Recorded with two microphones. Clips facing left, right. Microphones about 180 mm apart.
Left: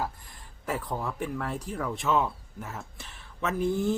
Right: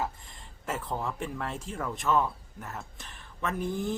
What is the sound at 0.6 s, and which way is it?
Speech, centre (ahead or behind).